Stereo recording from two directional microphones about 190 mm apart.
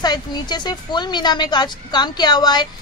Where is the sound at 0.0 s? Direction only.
20° left (ahead or behind).